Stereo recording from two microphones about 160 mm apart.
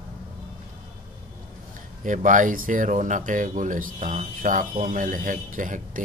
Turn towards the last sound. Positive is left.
turn(degrees=-55)  # may be behind; listen again after turning